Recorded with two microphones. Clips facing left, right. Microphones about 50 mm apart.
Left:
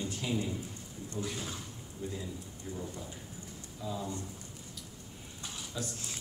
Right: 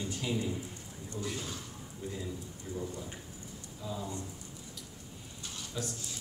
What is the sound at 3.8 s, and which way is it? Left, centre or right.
Speech, centre.